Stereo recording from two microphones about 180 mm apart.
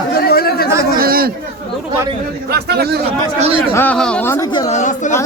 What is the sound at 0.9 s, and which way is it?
Chatter, 55° right (ahead or behind).